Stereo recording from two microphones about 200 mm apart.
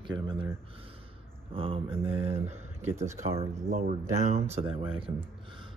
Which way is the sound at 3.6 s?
40° right (ahead or behind).